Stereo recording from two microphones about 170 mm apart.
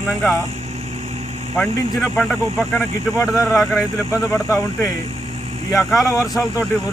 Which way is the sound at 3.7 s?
5° right (ahead or behind).